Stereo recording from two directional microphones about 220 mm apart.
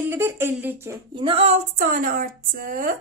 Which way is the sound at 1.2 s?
25° right (ahead or behind).